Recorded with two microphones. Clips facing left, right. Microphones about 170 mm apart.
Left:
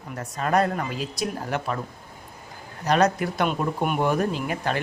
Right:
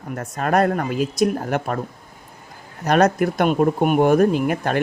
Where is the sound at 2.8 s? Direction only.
50° right (ahead or behind).